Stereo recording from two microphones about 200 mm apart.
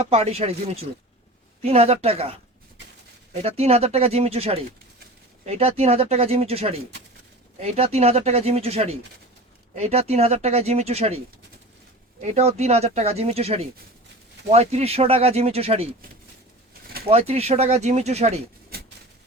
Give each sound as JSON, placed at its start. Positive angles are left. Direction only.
{"t": 0.0, "sound": "speech", "side_deg": -30}
{"t": 3.4, "sound": "speech", "side_deg": -30}
{"t": 12.2, "sound": "speech", "side_deg": -35}
{"t": 17.1, "sound": "speech", "side_deg": -30}